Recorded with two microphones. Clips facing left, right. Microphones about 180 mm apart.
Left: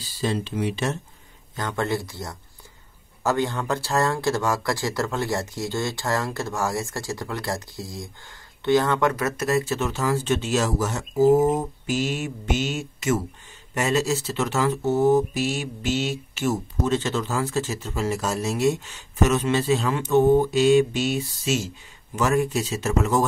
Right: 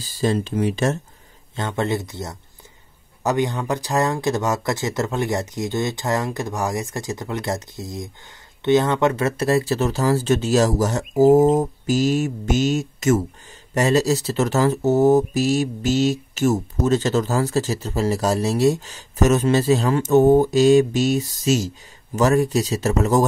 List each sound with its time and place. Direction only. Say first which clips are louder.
0.0 s speech: right 5 dB; 45° right (ahead or behind)
1.5 s speech: right 3 dB; 25° right (ahead or behind)